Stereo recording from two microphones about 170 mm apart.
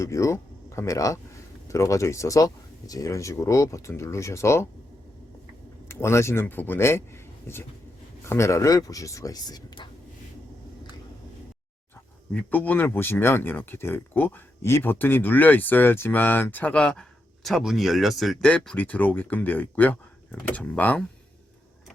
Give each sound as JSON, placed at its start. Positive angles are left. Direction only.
{"t": 0.0, "sound": "speech", "side_deg": 15}
{"t": 5.9, "sound": "speech", "side_deg": 15}
{"t": 12.3, "sound": "speech", "side_deg": 10}